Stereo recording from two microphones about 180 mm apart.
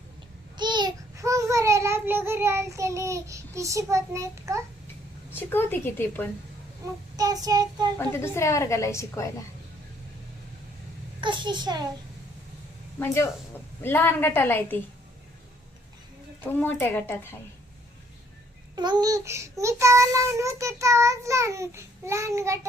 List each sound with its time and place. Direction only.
0.5 s child singing: 25° right (ahead or behind)
5.3 s a woman's voice: 10° left (ahead or behind)
7.4 s a child's voice: 20° right (ahead or behind)
7.9 s a woman's voice: 15° left (ahead or behind)
11.2 s a child's voice: 25° right (ahead or behind)
13.8 s a woman's voice: 10° left (ahead or behind)
16.4 s a woman's voice: 10° left (ahead or behind)
18.8 s child singing: 20° right (ahead or behind)